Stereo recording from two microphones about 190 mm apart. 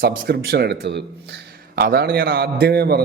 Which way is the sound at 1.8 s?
50° right (ahead or behind).